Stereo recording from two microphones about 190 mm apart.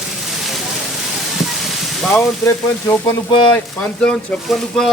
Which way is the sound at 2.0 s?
5° left (ahead or behind).